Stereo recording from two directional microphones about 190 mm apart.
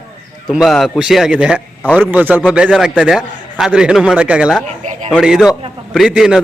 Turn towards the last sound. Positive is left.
turn(degrees=-5)  # may be behind; listen again after turning